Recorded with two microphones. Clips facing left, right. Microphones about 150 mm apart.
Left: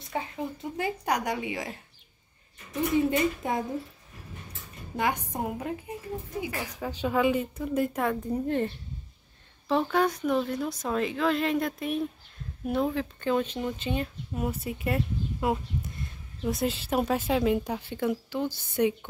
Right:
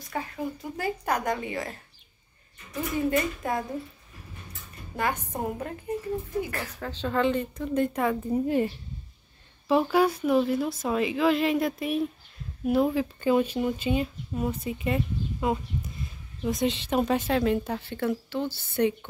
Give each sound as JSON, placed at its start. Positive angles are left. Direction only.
{"t": 0.0, "sound": "speech", "side_deg": 25}
{"t": 3.1, "sound": "a woman's voice", "side_deg": 20}
{"t": 4.9, "sound": "a woman's voice", "side_deg": 15}
{"t": 14.3, "sound": "speech", "side_deg": 5}